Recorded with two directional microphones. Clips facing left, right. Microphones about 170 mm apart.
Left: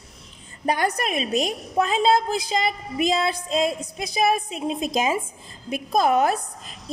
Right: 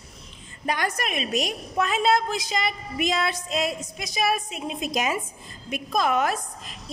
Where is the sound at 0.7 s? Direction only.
35° left (ahead or behind).